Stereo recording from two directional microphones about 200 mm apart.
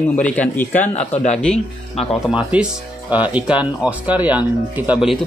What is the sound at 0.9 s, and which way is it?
Speech, 35° left (ahead or behind).